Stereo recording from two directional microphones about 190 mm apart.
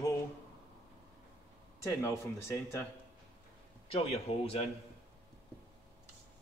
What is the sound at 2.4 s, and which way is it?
Speech, 15° left (ahead or behind).